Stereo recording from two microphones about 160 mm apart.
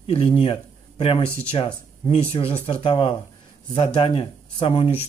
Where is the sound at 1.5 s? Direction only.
35° left (ahead or behind).